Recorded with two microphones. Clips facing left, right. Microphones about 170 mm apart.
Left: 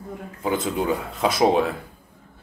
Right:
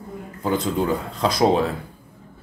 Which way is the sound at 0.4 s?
5° left (ahead or behind).